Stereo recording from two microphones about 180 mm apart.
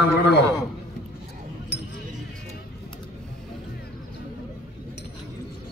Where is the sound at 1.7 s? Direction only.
70° left (ahead or behind).